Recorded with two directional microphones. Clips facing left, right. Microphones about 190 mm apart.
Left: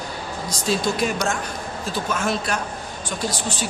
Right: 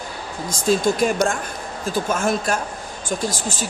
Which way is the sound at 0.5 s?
50° right (ahead or behind).